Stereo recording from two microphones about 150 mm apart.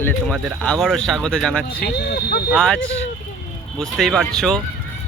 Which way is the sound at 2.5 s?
5° left (ahead or behind).